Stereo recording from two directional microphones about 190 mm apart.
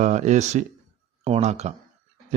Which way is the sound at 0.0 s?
40° right (ahead or behind).